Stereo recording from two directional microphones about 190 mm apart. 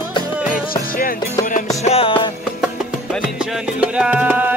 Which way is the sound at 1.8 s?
30° left (ahead or behind).